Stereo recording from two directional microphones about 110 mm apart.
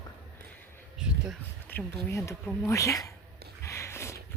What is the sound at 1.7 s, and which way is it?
Speech, 25° left (ahead or behind).